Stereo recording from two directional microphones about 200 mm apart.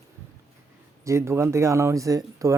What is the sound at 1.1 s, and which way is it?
Speech, 15° right (ahead or behind).